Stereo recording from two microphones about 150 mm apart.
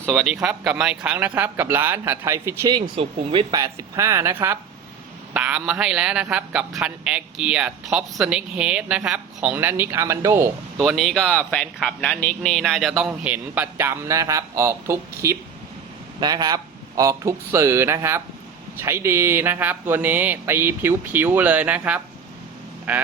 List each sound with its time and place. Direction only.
0.0 s speech: centre (ahead or behind); by 2.7 s 20° right (ahead or behind)
2.9 s speech: 40° right (ahead or behind)
3.5 s speech: 20° right (ahead or behind)
10.8 s speech: centre (ahead or behind)